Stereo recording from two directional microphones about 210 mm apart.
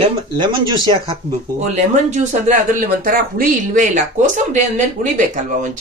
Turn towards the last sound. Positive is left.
turn(degrees=-35)  # may be behind; listen again after turning